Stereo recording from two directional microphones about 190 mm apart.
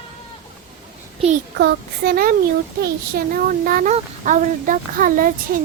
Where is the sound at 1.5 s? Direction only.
55° right (ahead or behind).